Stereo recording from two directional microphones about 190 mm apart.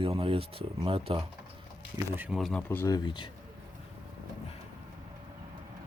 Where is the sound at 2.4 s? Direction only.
5° left (ahead or behind); by 3.3 s 25° left (ahead or behind).